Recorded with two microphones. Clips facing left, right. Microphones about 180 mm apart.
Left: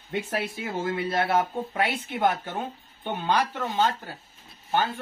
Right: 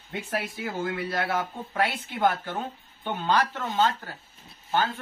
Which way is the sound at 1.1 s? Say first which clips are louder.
Left 4 dB; 25° left (ahead or behind).